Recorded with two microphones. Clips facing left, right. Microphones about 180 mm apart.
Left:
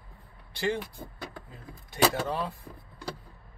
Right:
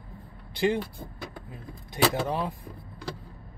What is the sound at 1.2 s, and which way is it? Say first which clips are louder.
Speech: right 3 dB; 15° right (ahead or behind).